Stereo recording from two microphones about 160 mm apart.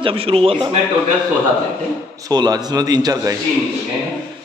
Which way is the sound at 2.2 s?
25° right (ahead or behind).